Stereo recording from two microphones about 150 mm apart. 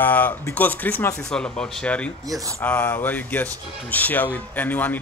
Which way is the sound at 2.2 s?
25° right (ahead or behind).